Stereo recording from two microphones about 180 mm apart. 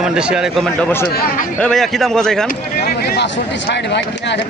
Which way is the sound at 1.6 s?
5° left (ahead or behind).